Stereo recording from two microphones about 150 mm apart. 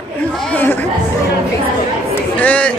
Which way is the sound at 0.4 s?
10° left (ahead or behind).